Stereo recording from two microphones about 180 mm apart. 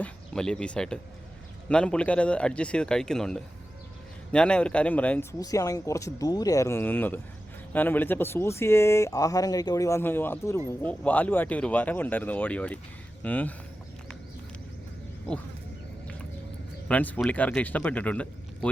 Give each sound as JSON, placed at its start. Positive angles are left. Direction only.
{"t": 0.0, "sound": "a man's voice", "side_deg": 5}
{"t": 16.9, "sound": "speech", "side_deg": 10}